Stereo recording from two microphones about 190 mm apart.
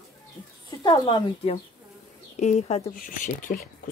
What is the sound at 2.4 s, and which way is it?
Speech, 35° left (ahead or behind).